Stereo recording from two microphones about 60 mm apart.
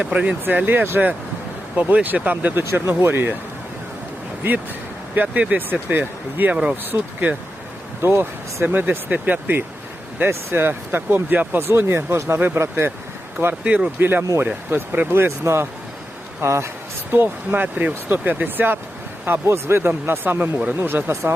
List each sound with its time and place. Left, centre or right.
0.0 s speech: right
0.4 s speech: right
2.7 s speech: right
5.1 s speech: right
8.0 s speech: right
13.7 s speech: right
14.0 s speech: right
15.1 s speech: right
17.1 s speech: right
19.5 s speech: right